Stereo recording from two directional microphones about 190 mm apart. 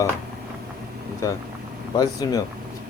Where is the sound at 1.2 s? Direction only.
15° left (ahead or behind).